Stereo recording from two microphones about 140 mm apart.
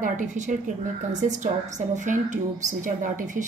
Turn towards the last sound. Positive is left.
turn(degrees=-65)  # may be behind; listen again after turning